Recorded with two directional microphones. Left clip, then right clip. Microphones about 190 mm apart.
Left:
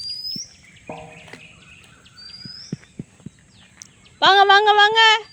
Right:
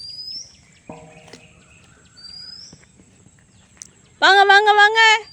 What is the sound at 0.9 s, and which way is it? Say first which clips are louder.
Bird: left 4 dB; 45° left (ahead or behind).